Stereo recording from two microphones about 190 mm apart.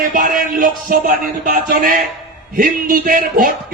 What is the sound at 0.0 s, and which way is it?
Speech, 45° right (ahead or behind).